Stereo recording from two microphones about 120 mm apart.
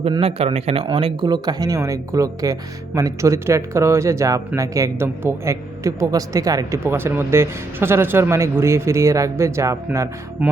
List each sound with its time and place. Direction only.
0.2 s a man's voice: 55° right (ahead or behind)
0.9 s speech: 45° right (ahead or behind); by 10.1 s 25° right (ahead or behind)